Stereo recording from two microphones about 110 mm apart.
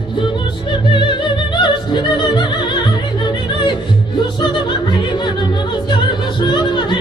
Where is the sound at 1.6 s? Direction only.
45° left (ahead or behind).